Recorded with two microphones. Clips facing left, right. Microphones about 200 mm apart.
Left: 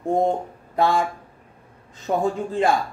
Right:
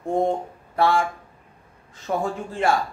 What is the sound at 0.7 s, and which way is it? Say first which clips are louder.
Speech: even; 15° left (ahead or behind).